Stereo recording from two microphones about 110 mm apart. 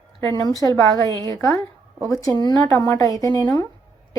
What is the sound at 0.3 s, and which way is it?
Speech, 35° left (ahead or behind).